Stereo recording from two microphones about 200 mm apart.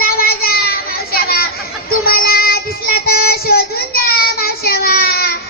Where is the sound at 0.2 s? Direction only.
50° left (ahead or behind).